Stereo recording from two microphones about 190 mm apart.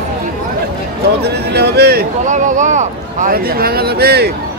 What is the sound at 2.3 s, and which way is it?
Speech, 40° right (ahead or behind).